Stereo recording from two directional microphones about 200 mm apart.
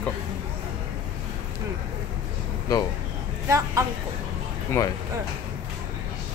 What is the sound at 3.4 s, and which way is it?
Speech, 15° right (ahead or behind).